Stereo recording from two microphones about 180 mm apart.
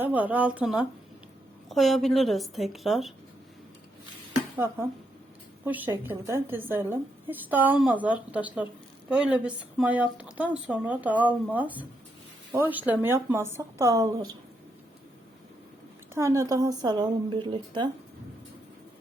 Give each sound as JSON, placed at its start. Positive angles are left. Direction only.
{"t": 0.0, "sound": "a woman's voice", "side_deg": -10}
{"t": 4.5, "sound": "a woman's voice", "side_deg": -15}
{"t": 16.1, "sound": "a woman's voice", "side_deg": -15}